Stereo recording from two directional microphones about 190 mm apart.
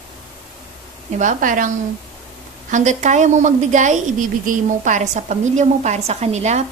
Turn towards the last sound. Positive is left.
turn(degrees=-35)  # may be behind; listen again after turning